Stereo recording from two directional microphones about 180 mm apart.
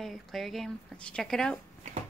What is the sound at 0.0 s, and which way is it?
A woman's voice, centre (ahead or behind).